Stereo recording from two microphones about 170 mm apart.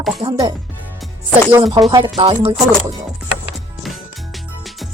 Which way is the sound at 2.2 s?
35° right (ahead or behind).